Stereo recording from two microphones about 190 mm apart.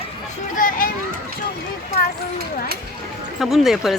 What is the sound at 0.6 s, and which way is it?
Children playing, 45° left (ahead or behind).